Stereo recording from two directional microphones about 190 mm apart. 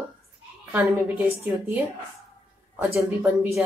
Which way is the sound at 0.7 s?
10° right (ahead or behind).